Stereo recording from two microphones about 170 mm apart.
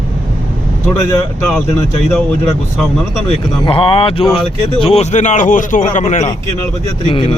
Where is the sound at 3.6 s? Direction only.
30° left (ahead or behind).